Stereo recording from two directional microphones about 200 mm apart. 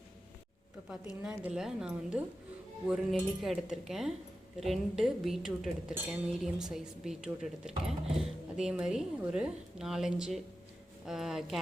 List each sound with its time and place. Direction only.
0.9 s speech: 5° right (ahead or behind)